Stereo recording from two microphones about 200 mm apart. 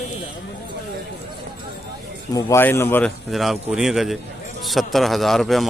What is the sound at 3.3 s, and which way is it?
A man's voice, centre (ahead or behind).